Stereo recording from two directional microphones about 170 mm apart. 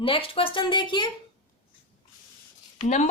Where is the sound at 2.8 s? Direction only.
40° left (ahead or behind).